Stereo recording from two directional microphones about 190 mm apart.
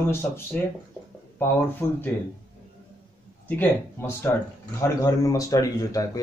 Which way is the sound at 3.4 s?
10° left (ahead or behind).